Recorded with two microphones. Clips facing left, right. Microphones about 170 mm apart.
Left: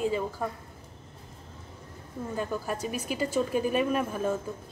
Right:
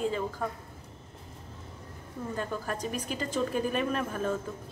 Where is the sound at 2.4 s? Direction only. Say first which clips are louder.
Left 3 dB; 10° left (ahead or behind).